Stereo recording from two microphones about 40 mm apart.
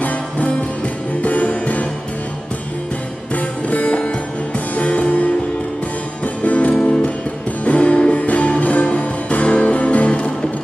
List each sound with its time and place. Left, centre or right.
0.0 s music: left
3.3 s music: left
6.7 s music: left
7.6 s music: left